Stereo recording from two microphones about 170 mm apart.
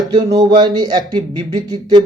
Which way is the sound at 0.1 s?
20° right (ahead or behind).